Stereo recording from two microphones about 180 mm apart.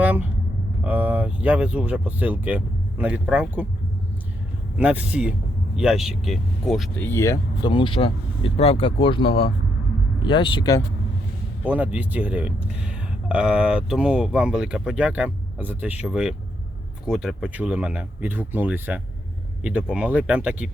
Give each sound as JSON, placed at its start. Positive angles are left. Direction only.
{"t": 0.0, "sound": "vehicle", "side_deg": -10}
{"t": 0.9, "sound": "speech", "side_deg": -10}
{"t": 4.8, "sound": "speech", "side_deg": -5}
{"t": 7.7, "sound": "speech", "side_deg": 30}
{"t": 11.6, "sound": "speech", "side_deg": -10}